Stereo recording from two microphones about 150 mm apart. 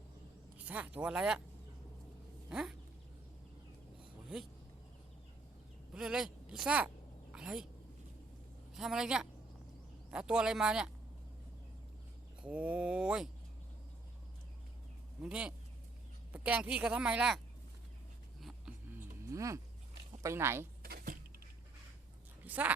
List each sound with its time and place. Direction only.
0.6 s speech: 10° right (ahead or behind)
2.5 s speech: 5° right (ahead or behind)
4.3 s speech: 5° right (ahead or behind)
5.9 s speech: 5° right (ahead or behind)
7.3 s a sound: 5° right (ahead or behind)
8.7 s a woman's voice: 5° right (ahead or behind)
12.4 s speech: 10° right (ahead or behind)
15.2 s speech: 5° right (ahead or behind)
18.3 s a sound: centre (ahead or behind)
18.9 s a sound: 15° right (ahead or behind)
20.2 s speech: 15° right (ahead or behind)
20.8 s vehicle: 90° right
22.4 s speech: 10° right (ahead or behind)